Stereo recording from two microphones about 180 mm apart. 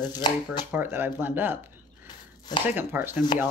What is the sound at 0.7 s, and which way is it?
Speech, 10° right (ahead or behind).